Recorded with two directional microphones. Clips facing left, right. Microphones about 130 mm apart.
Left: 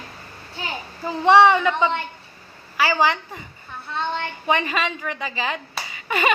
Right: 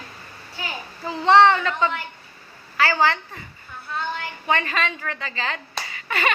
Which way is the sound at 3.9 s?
25° left (ahead or behind).